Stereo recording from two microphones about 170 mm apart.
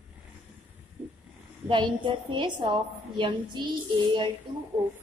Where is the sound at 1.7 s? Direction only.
30° right (ahead or behind).